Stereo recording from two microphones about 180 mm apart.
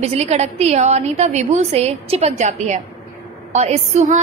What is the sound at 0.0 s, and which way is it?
A woman's voice, 35° right (ahead or behind).